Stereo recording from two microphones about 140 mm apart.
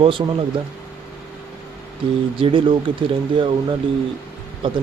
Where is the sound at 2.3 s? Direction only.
40° right (ahead or behind).